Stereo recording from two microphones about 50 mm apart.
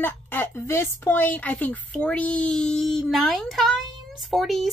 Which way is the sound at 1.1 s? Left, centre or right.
Left.